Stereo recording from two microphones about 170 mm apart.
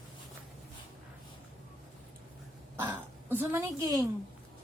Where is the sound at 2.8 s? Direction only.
10° right (ahead or behind).